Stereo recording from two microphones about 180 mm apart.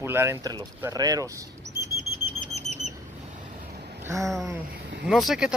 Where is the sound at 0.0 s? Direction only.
15° right (ahead or behind).